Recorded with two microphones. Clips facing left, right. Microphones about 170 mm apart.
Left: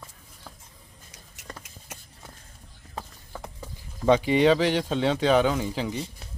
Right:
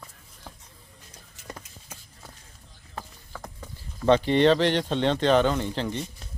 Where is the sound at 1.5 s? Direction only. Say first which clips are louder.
Right 2 dB; 10° right (ahead or behind).